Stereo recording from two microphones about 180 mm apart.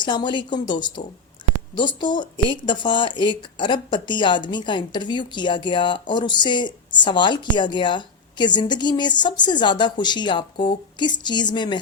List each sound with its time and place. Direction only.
0.0 s a woman's voice: 25° left (ahead or behind)